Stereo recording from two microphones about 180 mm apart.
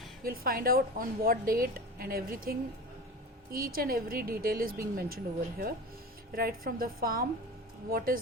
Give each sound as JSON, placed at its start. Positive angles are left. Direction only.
{"t": 0.2, "sound": "a woman's voice", "side_deg": -55}